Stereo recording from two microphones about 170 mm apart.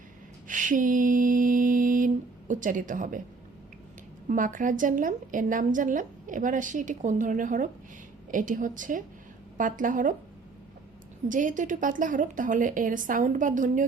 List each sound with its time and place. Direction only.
0.4 s a sound: 50° right (ahead or behind)
2.5 s a woman's voice: 50° right (ahead or behind)
4.3 s a woman's voice: 50° right (ahead or behind)
11.3 s a woman's voice: 50° right (ahead or behind)